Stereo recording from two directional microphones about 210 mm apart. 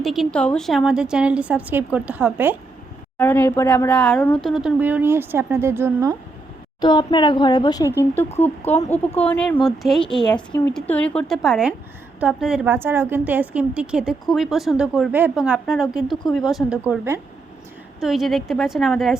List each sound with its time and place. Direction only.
0.0 s a woman's voice: centre (ahead or behind)
3.2 s a woman's voice: 10° left (ahead or behind); by 6.1 s 15° right (ahead or behind)
6.8 s a woman's voice: 20° left (ahead or behind); by 19.1 s centre (ahead or behind)